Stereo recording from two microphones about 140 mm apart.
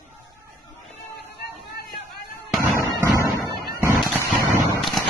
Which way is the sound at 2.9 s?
25° right (ahead or behind).